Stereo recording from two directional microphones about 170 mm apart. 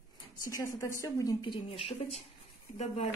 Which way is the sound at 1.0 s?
20° left (ahead or behind).